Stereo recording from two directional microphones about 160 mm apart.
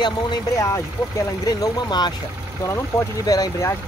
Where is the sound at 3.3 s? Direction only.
20° left (ahead or behind).